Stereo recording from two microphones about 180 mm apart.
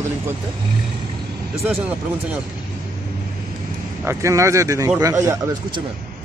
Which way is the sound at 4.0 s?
15° right (ahead or behind).